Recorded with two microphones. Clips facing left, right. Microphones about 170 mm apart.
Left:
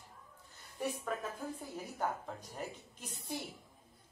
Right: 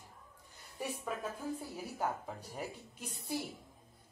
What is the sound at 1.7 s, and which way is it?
Speech, 10° right (ahead or behind).